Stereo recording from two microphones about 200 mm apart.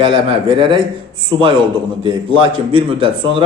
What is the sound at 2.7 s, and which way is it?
Speech, 25° right (ahead or behind).